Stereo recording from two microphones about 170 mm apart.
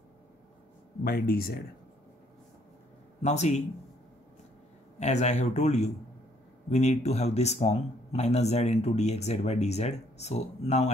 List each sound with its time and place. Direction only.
1.0 s speech: 60° left (ahead or behind)
3.2 s a man's voice: 40° left (ahead or behind)
4.9 s speech: 40° left (ahead or behind)